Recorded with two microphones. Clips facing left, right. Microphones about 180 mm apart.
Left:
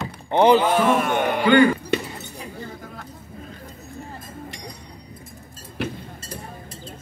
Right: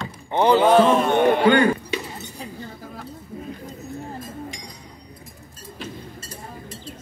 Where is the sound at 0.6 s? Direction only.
20° right (ahead or behind).